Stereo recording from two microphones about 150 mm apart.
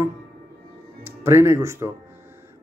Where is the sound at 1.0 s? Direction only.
15° right (ahead or behind).